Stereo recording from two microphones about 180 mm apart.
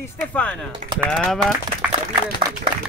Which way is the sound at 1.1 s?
Centre (ahead or behind).